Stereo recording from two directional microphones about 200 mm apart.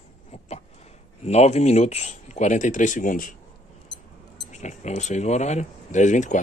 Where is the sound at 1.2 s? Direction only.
35° left (ahead or behind).